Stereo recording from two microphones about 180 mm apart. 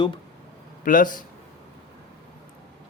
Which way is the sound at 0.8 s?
50° left (ahead or behind).